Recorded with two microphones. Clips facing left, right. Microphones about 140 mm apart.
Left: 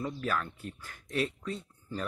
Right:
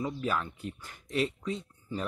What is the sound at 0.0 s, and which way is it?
Speech, 10° right (ahead or behind).